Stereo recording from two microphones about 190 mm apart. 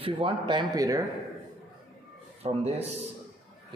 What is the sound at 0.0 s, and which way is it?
Speech, 30° right (ahead or behind).